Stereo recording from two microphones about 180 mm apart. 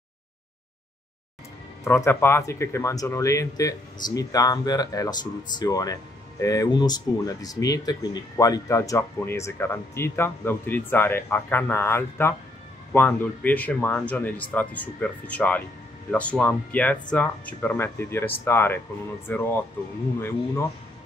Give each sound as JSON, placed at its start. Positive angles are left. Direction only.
{"t": 1.9, "sound": "speech", "side_deg": 15}